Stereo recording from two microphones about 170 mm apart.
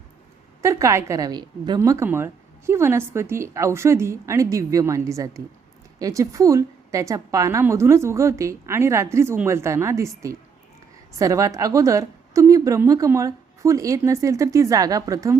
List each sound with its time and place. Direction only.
0.6 s a woman's voice: 20° right (ahead or behind)